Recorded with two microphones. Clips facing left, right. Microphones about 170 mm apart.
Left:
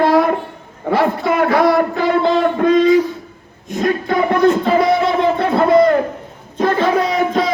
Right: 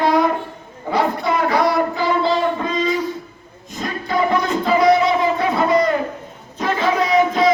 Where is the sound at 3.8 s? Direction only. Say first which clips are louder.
Left 5 dB; 60° left (ahead or behind).